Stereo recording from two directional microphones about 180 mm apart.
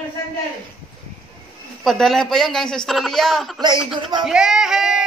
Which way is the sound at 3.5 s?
25° right (ahead or behind).